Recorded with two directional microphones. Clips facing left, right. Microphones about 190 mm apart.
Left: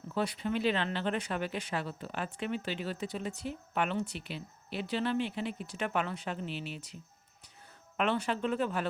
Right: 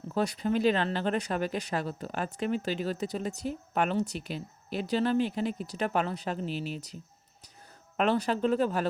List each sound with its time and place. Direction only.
0.1 s speech: 40° right (ahead or behind)